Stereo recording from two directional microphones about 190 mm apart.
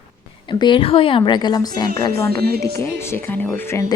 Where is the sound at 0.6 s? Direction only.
30° left (ahead or behind).